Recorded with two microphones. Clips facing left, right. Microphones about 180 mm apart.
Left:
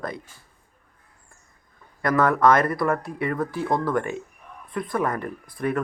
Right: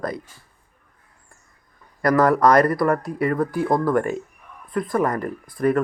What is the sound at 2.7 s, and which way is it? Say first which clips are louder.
Speech: right 4 dB; centre (ahead or behind).